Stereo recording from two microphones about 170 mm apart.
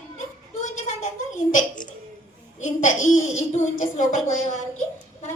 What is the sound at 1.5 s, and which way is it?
A woman's voice, 50° left (ahead or behind).